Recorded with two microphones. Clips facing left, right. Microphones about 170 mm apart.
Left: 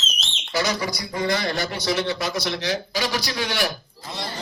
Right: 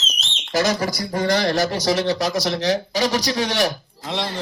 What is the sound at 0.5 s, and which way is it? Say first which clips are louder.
A man's voice: right 4 dB; 45° right (ahead or behind).